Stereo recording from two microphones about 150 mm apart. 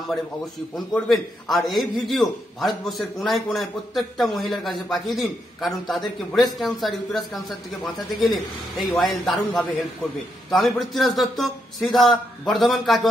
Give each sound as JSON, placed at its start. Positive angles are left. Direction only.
{"t": 0.7, "sound": "a man's voice", "side_deg": 0}